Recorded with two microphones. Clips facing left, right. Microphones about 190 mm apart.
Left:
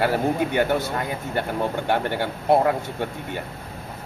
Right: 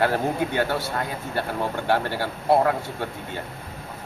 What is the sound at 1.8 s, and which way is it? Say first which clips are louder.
Speech: left 1 dB; 20° left (ahead or behind).